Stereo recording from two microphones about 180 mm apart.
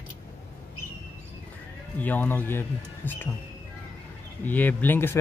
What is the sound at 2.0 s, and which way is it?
Speech, 10° left (ahead or behind).